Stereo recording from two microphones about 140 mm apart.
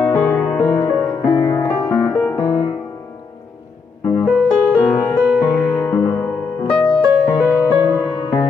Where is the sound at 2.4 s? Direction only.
35° left (ahead or behind).